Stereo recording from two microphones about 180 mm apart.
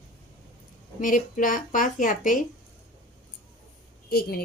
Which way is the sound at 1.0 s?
45° left (ahead or behind).